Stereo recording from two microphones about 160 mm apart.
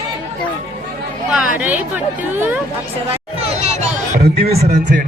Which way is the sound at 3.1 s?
40° right (ahead or behind).